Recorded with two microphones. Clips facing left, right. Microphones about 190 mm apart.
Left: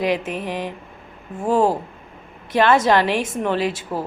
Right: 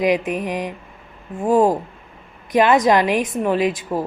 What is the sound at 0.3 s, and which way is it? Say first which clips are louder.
Speech: right 3 dB; 15° right (ahead or behind).